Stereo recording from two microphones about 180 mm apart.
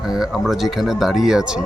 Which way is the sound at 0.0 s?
Centre (ahead or behind).